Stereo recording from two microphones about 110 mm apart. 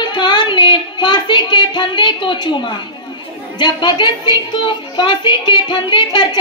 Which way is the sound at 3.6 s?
45° left (ahead or behind).